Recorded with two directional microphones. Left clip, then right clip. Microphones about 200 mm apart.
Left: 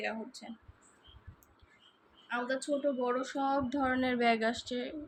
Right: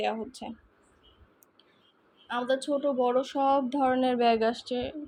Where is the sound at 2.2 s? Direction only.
35° right (ahead or behind); by 4.9 s 15° right (ahead or behind).